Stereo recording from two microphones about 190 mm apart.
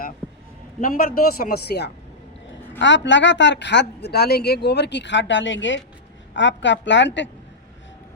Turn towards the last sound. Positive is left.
turn(degrees=70)  # may be behind; listen again after turning